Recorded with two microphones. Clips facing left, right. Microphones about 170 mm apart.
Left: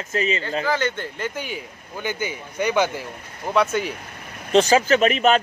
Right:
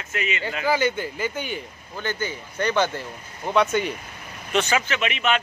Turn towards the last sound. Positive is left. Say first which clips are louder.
# left 7 dB
turn(degrees=40)  # may be behind; listen again after turning